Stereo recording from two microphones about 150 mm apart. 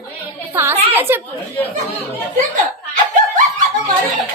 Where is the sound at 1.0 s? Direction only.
15° right (ahead or behind).